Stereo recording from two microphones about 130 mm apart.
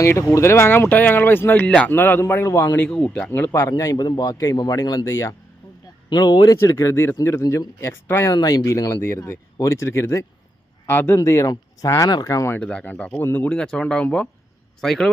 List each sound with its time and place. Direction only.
0.0 s a man's voice: 20° left (ahead or behind)
12.5 s a man's voice: 10° left (ahead or behind)